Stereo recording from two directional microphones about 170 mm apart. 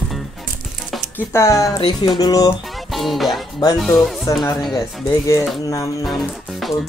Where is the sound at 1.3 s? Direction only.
15° left (ahead or behind).